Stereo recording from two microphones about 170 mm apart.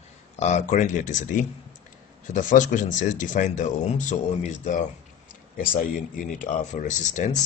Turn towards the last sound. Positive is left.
turn(degrees=45)  # may be behind; listen again after turning